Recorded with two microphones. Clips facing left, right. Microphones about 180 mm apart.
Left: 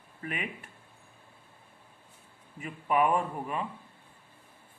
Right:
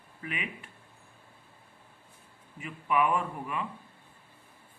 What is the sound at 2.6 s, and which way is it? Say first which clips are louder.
Speech: left 1 dB; 40° left (ahead or behind).